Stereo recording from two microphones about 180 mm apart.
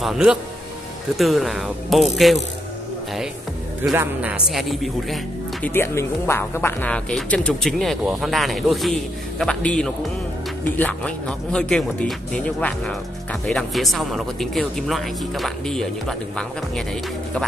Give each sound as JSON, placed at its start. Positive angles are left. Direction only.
{"t": 0.0, "sound": "speech", "side_deg": -5}
{"t": 3.9, "sound": "speech", "side_deg": -10}
{"t": 5.7, "sound": "speech", "side_deg": 15}